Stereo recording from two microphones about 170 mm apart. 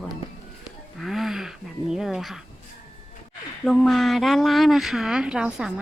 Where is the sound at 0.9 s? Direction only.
Centre (ahead or behind).